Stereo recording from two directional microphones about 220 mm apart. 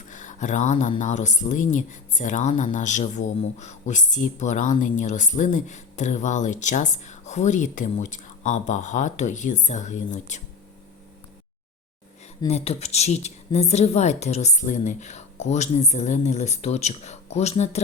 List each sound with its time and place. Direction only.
0.1 s speech: 35° left (ahead or behind)
12.5 s speech: 30° left (ahead or behind)